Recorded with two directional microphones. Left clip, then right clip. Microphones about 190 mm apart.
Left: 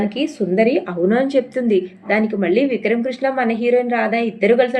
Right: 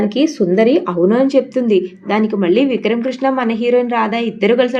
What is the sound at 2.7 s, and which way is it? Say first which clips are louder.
A woman's voice: right 2 dB; 30° right (ahead or behind).